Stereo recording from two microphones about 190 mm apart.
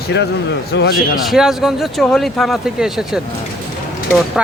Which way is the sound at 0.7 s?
55° left (ahead or behind).